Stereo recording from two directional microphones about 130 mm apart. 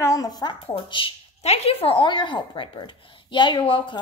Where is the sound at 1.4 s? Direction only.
50° left (ahead or behind).